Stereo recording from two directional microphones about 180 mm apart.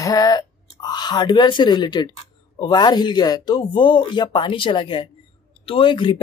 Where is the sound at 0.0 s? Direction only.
20° left (ahead or behind).